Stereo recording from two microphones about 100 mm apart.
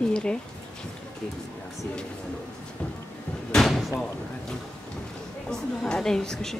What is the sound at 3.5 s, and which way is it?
A woman's voice, centre (ahead or behind).